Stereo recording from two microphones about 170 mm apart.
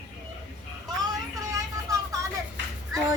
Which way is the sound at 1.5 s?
20° right (ahead or behind).